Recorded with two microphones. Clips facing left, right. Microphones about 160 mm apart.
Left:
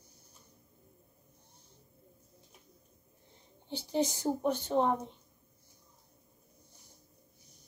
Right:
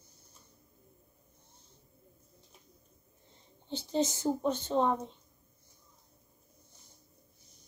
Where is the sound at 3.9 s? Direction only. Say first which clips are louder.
Right 1 dB; 15° left (ahead or behind).